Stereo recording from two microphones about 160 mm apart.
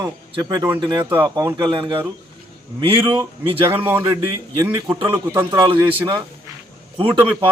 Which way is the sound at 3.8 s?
15° right (ahead or behind).